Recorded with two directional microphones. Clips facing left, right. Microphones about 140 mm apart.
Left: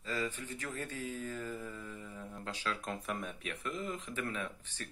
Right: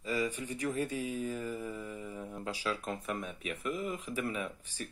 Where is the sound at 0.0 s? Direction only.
15° right (ahead or behind).